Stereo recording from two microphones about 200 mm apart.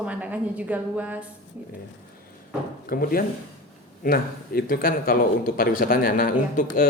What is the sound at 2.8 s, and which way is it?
Speech, 45° left (ahead or behind).